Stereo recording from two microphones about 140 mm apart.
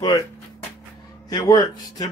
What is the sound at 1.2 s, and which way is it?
Speech, 30° left (ahead or behind).